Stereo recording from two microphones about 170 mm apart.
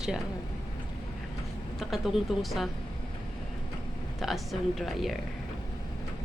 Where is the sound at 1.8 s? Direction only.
Centre (ahead or behind).